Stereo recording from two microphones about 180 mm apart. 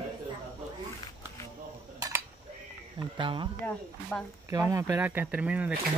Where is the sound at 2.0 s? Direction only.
20° right (ahead or behind).